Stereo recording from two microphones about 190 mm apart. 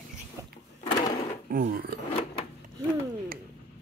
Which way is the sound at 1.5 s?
50° right (ahead or behind).